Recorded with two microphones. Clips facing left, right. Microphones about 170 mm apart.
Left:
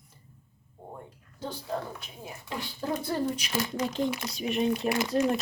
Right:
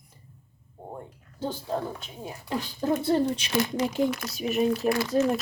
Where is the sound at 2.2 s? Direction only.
30° right (ahead or behind).